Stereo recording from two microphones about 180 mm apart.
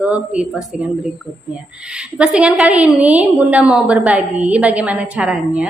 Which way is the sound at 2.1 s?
5° right (ahead or behind).